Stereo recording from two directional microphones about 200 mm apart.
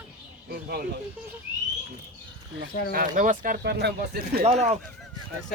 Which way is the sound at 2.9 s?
45° right (ahead or behind).